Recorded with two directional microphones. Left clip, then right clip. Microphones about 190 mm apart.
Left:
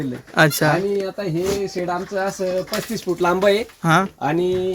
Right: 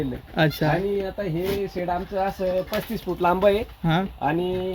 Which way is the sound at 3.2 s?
25° left (ahead or behind).